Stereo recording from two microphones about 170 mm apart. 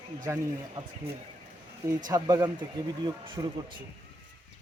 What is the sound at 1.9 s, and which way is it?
Speech, 25° right (ahead or behind).